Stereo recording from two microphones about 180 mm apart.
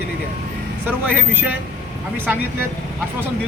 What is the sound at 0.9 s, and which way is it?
Speech, 10° right (ahead or behind).